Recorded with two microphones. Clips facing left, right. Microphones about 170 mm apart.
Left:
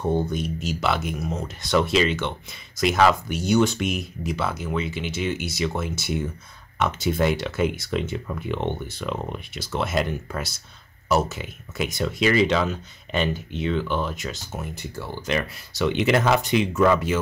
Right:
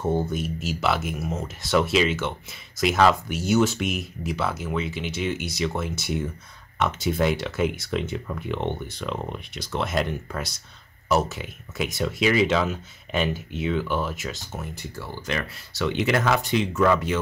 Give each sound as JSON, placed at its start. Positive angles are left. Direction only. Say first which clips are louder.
{"t": 0.0, "sound": "speech", "louder": "left 1 dB", "side_deg": -5}
{"t": 14.5, "sound": "speech", "louder": "left 2 dB", "side_deg": 15}